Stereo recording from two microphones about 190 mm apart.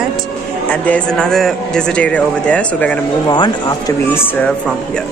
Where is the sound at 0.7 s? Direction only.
5° left (ahead or behind).